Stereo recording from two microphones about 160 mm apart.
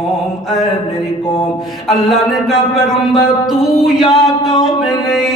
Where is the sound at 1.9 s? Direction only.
Centre (ahead or behind).